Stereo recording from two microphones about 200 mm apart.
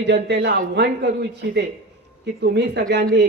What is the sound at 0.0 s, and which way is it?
A woman's voice, 55° right (ahead or behind).